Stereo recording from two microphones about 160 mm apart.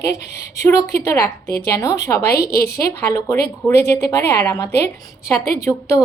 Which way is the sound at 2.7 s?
20° left (ahead or behind).